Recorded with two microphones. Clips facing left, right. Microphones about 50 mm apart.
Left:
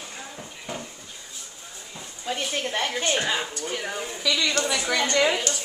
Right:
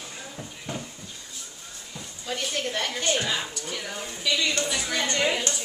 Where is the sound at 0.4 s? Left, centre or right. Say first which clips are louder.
Right 1 dB; centre.